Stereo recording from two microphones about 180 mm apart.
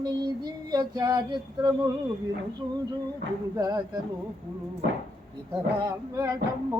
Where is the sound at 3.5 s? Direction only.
20° right (ahead or behind).